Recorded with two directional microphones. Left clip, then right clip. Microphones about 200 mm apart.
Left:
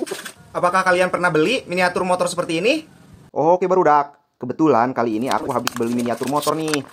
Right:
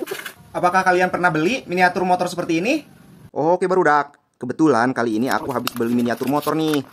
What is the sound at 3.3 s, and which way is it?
Speech, 10° right (ahead or behind).